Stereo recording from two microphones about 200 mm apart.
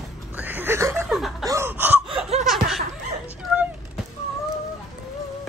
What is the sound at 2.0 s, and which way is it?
Laughter, 25° right (ahead or behind).